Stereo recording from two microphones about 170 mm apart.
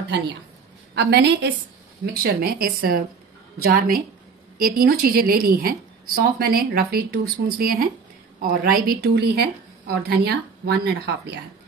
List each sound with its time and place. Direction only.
0.9 s a woman's voice: 85° right
2.2 s a woman's voice: 60° right (ahead or behind); by 11.3 s 80° right